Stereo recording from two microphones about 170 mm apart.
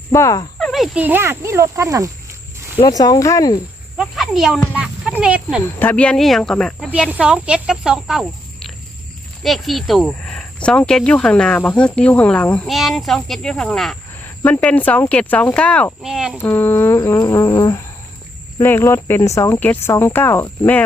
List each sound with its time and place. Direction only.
0.1 s speech: 20° left (ahead or behind)
0.6 s speech: centre (ahead or behind); by 2.0 s 15° right (ahead or behind)
2.7 s speech: 20° left (ahead or behind)
3.9 s snake: centre (ahead or behind)
5.2 s speech: 5° right (ahead or behind)
5.8 s speech: 10° left (ahead or behind)
16.4 s speech: 15° left (ahead or behind)